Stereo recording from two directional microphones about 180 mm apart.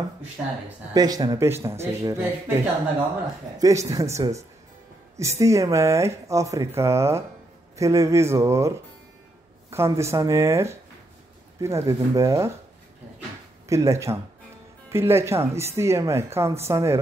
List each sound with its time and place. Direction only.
0.9 s speech: 20° right (ahead or behind)
13.7 s speech: 15° right (ahead or behind)